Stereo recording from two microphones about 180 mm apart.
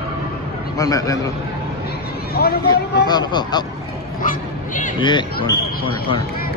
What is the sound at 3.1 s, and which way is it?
Speech, 25° left (ahead or behind).